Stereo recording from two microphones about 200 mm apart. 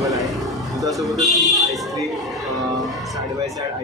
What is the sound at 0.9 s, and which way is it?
Buzzer, centre (ahead or behind).